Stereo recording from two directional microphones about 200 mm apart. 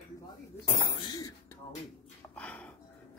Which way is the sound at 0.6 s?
20° left (ahead or behind).